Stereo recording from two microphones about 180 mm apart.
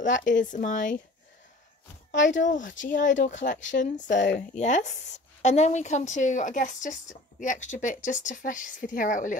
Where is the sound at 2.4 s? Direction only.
45° left (ahead or behind).